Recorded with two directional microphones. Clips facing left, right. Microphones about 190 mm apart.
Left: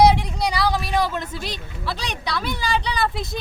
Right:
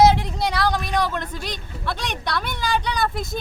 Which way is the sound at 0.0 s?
Centre (ahead or behind).